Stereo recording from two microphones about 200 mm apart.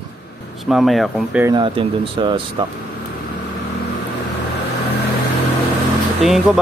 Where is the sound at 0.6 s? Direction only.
Centre (ahead or behind).